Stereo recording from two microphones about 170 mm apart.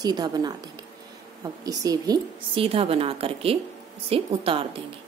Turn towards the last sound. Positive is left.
turn(degrees=-35)  # may be behind; listen again after turning